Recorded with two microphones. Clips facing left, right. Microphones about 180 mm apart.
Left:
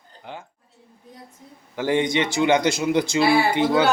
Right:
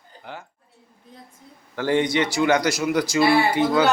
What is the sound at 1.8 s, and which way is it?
A man's voice, 15° left (ahead or behind).